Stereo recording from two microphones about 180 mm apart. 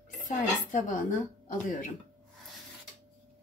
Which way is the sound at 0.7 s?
45° left (ahead or behind).